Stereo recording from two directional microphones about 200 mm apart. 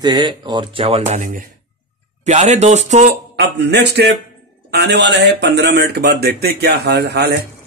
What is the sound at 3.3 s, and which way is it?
Speech, 55° right (ahead or behind).